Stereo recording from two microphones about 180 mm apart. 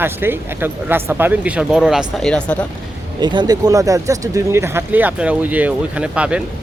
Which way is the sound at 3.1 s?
25° right (ahead or behind).